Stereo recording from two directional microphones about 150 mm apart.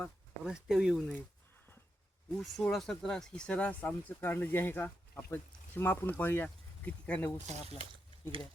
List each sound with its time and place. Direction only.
0.0 s speech: 5° right (ahead or behind)
2.4 s speech: centre (ahead or behind)
7.4 s speech: 45° right (ahead or behind)